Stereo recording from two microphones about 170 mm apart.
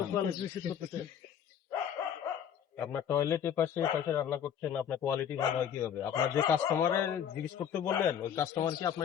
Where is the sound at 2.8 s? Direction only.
15° left (ahead or behind).